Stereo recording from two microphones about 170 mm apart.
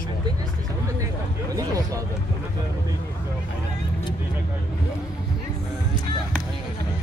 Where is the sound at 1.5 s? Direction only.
20° right (ahead or behind).